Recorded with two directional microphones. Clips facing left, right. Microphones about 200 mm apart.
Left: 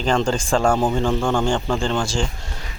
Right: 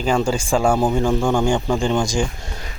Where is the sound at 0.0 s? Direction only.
10° right (ahead or behind).